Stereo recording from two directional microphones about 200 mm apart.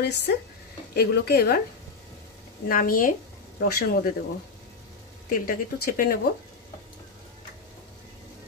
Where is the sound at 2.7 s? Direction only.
45° left (ahead or behind).